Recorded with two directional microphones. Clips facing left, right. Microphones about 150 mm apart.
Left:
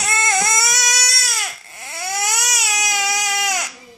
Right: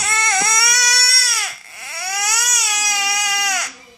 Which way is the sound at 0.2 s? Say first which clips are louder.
Left 1 dB; 20° left (ahead or behind).